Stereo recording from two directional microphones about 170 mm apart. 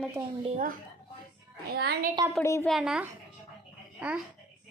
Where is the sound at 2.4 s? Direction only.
15° left (ahead or behind).